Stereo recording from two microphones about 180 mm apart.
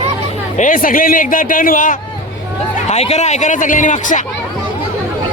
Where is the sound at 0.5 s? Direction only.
50° left (ahead or behind).